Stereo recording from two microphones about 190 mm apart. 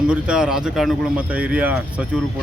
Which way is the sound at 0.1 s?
5° right (ahead or behind).